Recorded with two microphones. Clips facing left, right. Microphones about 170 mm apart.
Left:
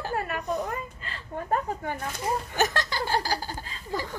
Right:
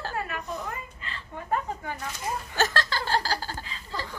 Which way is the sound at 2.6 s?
15° left (ahead or behind).